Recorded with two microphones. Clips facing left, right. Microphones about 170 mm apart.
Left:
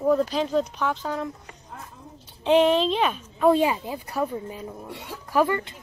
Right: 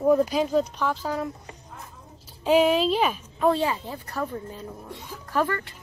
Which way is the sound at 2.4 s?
5° right (ahead or behind).